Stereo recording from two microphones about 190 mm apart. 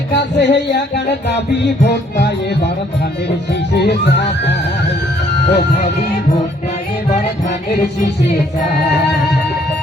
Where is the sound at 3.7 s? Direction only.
65° left (ahead or behind).